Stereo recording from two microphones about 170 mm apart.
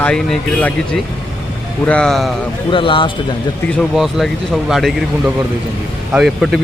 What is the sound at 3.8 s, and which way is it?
Speech, centre (ahead or behind).